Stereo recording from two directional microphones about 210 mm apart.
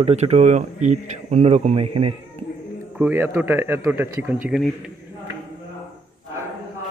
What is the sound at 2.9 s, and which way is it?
A man's voice, 10° right (ahead or behind).